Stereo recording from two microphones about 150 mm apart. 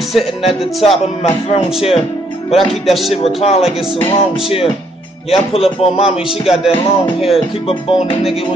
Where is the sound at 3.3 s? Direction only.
45° left (ahead or behind).